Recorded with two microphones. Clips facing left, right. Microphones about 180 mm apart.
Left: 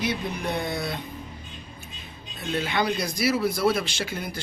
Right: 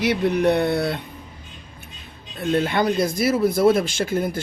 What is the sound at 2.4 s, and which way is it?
Speech, 55° right (ahead or behind).